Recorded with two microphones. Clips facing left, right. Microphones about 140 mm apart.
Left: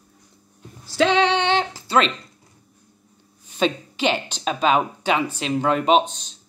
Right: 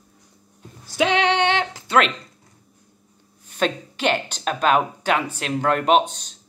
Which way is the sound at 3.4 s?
50° right (ahead or behind).